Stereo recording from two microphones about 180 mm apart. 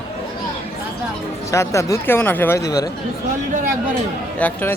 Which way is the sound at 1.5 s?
15° left (ahead or behind).